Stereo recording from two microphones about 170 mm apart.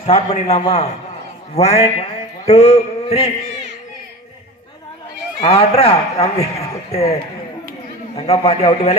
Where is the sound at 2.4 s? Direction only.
40° left (ahead or behind).